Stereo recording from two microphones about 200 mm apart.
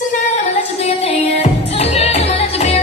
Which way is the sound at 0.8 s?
30° left (ahead or behind).